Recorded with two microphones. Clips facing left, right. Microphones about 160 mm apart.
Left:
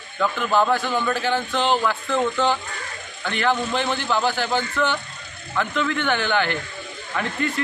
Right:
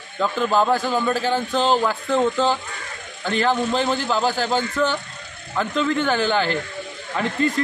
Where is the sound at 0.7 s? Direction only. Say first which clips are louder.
Right 2 dB; 35° right (ahead or behind).